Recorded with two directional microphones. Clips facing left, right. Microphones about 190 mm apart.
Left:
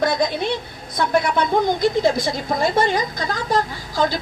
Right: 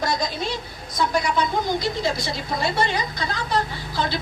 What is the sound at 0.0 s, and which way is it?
A woman's voice, 60° left (ahead or behind).